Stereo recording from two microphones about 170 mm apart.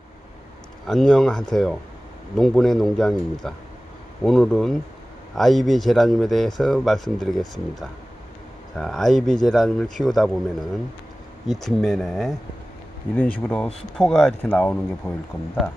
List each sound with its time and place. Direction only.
0.8 s speech: centre (ahead or behind)
8.7 s speech: centre (ahead or behind)
11.4 s speech: centre (ahead or behind)